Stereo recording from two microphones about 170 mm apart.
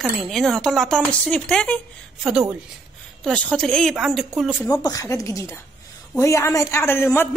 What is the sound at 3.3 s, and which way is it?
Speech, 5° left (ahead or behind).